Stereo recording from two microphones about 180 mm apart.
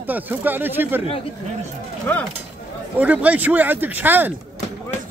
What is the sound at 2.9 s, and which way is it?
Speech, 10° right (ahead or behind).